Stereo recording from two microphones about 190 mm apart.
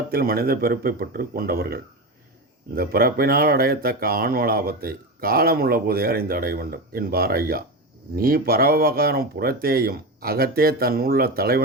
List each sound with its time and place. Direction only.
0.1 s speech: 50° right (ahead or behind)